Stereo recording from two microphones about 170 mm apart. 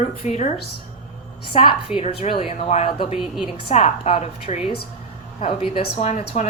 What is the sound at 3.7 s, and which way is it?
Speech, 35° left (ahead or behind).